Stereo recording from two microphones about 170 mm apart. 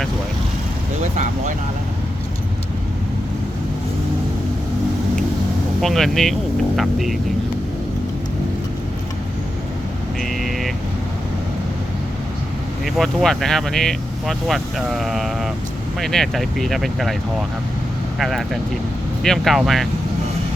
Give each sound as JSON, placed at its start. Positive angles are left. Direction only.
{"t": 1.1, "sound": "speech", "side_deg": -45}
{"t": 5.8, "sound": "speech", "side_deg": 0}
{"t": 10.2, "sound": "vehicle", "side_deg": 0}
{"t": 12.8, "sound": "speech", "side_deg": 0}
{"t": 18.2, "sound": "speech", "side_deg": 0}